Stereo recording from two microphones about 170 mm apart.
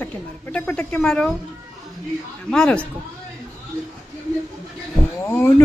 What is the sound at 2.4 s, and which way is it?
Speech, 5° left (ahead or behind).